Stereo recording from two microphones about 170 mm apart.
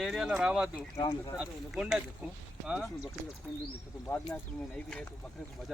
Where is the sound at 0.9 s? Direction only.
20° left (ahead or behind).